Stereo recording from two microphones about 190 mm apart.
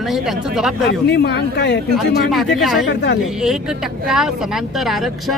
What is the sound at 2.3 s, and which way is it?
A man's voice, centre (ahead or behind).